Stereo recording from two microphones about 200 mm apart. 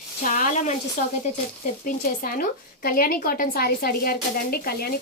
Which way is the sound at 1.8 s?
45° left (ahead or behind).